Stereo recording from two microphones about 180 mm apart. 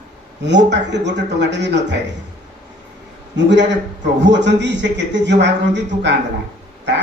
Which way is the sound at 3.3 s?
80° right.